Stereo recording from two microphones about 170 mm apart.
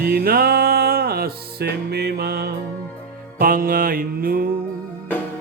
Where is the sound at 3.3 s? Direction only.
55° right (ahead or behind).